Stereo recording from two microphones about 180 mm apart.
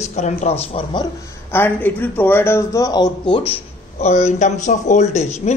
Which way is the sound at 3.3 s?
30° left (ahead or behind).